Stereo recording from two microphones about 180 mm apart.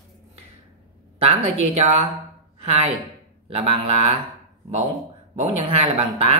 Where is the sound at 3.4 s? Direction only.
30° right (ahead or behind).